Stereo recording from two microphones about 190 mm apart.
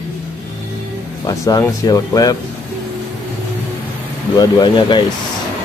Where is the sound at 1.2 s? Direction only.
20° left (ahead or behind).